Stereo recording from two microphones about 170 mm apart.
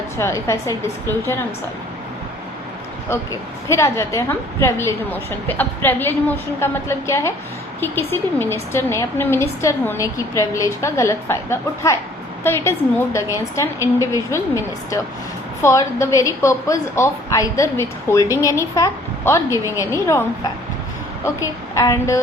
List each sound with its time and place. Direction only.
0.2 s a woman's voice: 15° left (ahead or behind)
3.7 s a woman's voice: 15° left (ahead or behind)